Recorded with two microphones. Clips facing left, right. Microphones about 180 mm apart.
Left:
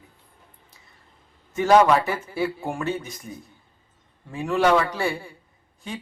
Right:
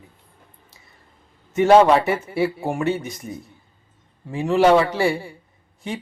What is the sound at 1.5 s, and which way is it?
Speech, 25° right (ahead or behind).